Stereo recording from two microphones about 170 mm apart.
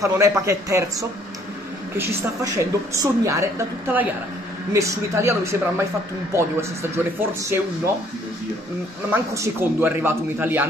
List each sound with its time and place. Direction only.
0.0 s a woman's voice: 15° right (ahead or behind)
2.0 s a woman's voice: 15° right (ahead or behind)
9.1 s a woman's voice: 15° right (ahead or behind)